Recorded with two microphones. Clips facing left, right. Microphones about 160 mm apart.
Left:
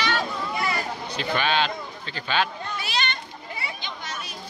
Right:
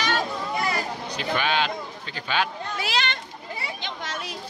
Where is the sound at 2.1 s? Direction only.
10° right (ahead or behind).